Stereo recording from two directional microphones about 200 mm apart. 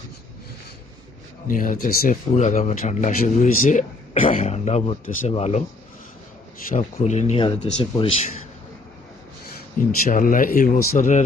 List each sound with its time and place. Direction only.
1.5 s speech: 45° left (ahead or behind)
2.3 s speech: 35° left (ahead or behind)
6.7 s speech: 40° left (ahead or behind)
10.1 s speech: 45° left (ahead or behind)